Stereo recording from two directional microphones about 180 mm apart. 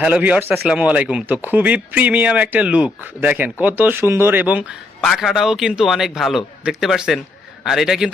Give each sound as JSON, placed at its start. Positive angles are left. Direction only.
{"t": 0.0, "sound": "a man's voice", "side_deg": -10}